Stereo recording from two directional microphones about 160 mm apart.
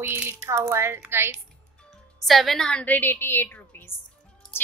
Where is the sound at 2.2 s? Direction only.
Centre (ahead or behind).